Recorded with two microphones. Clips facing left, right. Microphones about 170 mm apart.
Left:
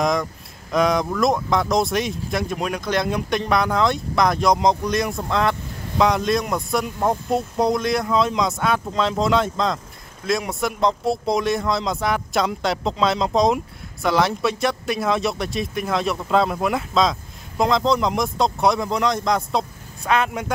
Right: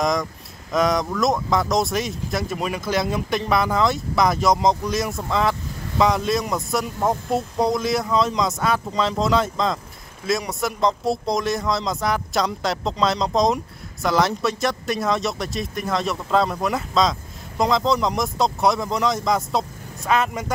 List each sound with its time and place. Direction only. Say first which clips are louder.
0.0 s speech: left 1 dB; centre (ahead or behind)